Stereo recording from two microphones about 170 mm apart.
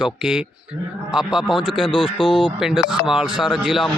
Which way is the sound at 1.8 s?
30° left (ahead or behind).